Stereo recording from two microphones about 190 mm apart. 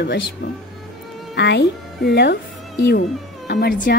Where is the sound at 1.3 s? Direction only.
60° left (ahead or behind).